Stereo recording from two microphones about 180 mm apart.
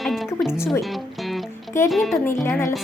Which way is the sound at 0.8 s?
Centre (ahead or behind).